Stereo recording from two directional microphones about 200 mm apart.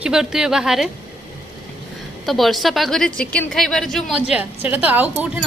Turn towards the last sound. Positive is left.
turn(degrees=-5)  # may be behind; listen again after turning